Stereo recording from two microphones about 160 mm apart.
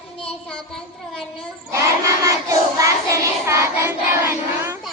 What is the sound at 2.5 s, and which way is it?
Child singing, 20° right (ahead or behind).